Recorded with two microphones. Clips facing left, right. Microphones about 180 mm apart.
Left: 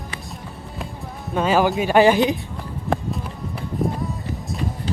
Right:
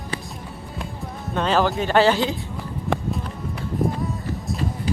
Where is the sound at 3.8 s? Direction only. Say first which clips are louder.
Even; centre (ahead or behind).